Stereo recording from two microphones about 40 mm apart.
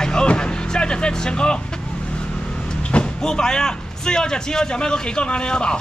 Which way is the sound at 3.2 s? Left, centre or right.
Centre.